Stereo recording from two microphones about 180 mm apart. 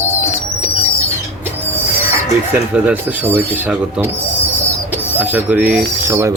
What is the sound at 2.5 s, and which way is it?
Speech, 10° right (ahead or behind).